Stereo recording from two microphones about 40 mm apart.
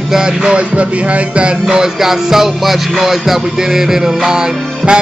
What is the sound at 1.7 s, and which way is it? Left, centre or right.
Music, centre.